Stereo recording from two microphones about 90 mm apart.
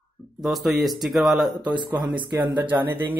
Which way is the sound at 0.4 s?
Centre (ahead or behind).